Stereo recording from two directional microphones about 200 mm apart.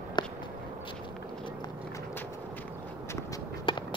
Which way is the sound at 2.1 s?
10° left (ahead or behind).